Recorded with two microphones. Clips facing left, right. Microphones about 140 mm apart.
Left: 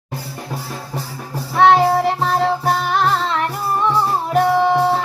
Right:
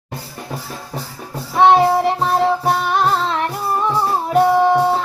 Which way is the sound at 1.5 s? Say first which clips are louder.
Right 1 dB; 15° right (ahead or behind).